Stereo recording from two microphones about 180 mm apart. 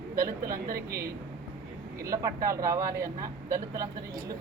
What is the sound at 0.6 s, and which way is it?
Speech, 60° right (ahead or behind).